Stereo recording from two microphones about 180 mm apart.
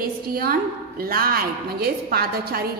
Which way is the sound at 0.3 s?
55° right (ahead or behind).